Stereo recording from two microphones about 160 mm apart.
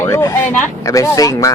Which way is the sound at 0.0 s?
15° left (ahead or behind).